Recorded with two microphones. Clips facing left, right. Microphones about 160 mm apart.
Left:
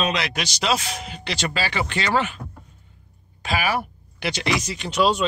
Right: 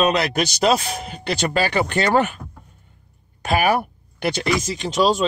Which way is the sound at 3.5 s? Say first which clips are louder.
Right 5 dB; 50° right (ahead or behind).